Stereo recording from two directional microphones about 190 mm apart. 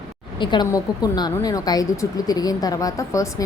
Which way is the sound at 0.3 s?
25° left (ahead or behind).